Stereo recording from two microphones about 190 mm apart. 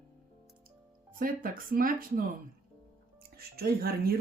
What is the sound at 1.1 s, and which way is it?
Speech, 45° right (ahead or behind).